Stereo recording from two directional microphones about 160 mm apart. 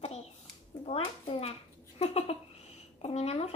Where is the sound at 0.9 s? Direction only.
40° left (ahead or behind).